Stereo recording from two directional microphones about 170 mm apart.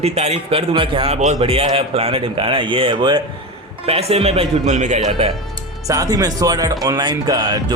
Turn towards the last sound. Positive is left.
turn(degrees=-25)  # may be behind; listen again after turning